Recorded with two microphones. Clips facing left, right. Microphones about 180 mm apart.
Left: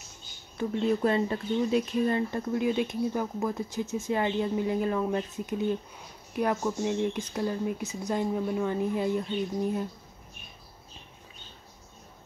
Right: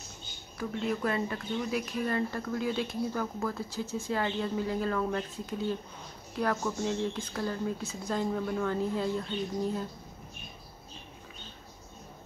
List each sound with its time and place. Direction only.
0.6 s speech: 25° left (ahead or behind)